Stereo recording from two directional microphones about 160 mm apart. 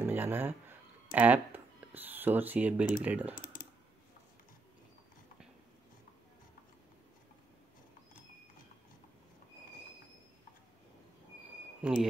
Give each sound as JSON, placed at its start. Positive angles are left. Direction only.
{"t": 0.0, "sound": "a sound", "side_deg": -15}
{"t": 1.1, "sound": "speech", "side_deg": -10}
{"t": 3.3, "sound": "typing", "side_deg": 60}
{"t": 11.8, "sound": "speech", "side_deg": 0}